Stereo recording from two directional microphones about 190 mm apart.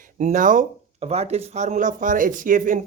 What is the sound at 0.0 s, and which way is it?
Speech, 40° right (ahead or behind).